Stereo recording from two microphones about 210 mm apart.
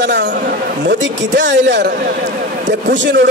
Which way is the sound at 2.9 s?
60° right (ahead or behind).